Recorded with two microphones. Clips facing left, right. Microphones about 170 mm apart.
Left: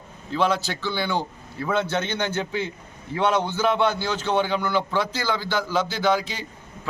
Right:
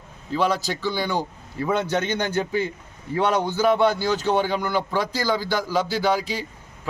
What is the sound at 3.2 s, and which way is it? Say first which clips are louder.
Speech: left 1 dB; 40° right (ahead or behind).